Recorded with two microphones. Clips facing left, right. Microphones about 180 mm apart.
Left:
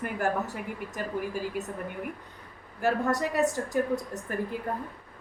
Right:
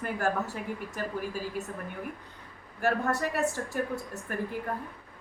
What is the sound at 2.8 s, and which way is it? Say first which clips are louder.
A woman's voice: left 2 dB; 20° left (ahead or behind).